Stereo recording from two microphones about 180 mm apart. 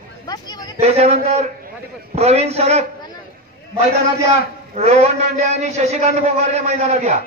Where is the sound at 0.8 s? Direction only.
35° right (ahead or behind).